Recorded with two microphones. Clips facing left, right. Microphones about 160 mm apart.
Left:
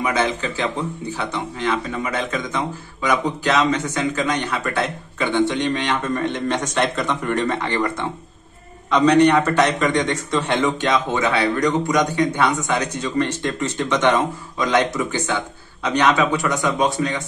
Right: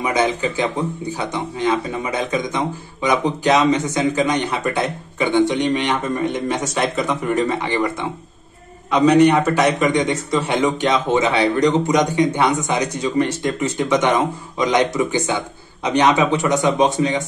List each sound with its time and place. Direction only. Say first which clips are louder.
0.0 s a man's voice: right 2 dB; 20° right (ahead or behind)